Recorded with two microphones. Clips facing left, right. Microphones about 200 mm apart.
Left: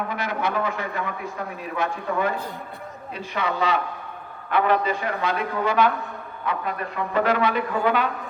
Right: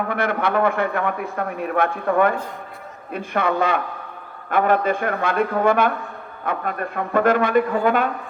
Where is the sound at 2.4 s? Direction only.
35° left (ahead or behind).